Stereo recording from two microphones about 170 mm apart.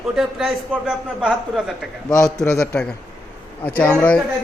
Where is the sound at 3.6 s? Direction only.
10° left (ahead or behind).